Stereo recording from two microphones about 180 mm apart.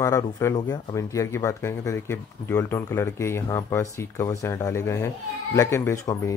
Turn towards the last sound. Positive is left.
turn(degrees=15)  # may be behind; listen again after turning